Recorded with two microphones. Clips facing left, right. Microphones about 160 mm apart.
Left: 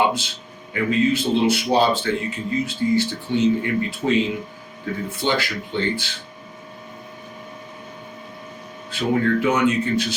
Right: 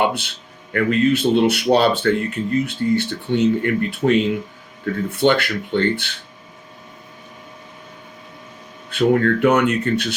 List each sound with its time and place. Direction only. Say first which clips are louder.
0.0 s speech: right 1 dB; 60° right (ahead or behind)
8.9 s speech: right 4 dB; 60° right (ahead or behind)